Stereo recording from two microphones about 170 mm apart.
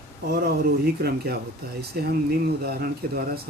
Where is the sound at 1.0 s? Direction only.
70° right (ahead or behind).